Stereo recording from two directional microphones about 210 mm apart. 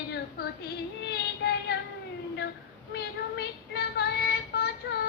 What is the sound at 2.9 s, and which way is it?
Child singing, 50° left (ahead or behind).